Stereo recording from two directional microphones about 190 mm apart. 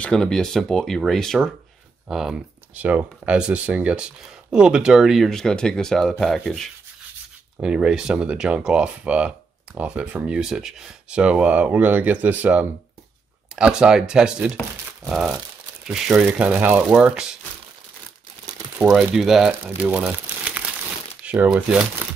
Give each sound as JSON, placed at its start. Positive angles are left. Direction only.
{"t": 0.0, "sound": "speech", "side_deg": 5}
{"t": 18.8, "sound": "speech", "side_deg": 0}
{"t": 19.8, "sound": "crumpling", "side_deg": -5}
{"t": 21.2, "sound": "speech", "side_deg": -5}